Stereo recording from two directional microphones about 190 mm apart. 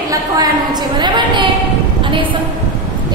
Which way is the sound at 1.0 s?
25° right (ahead or behind).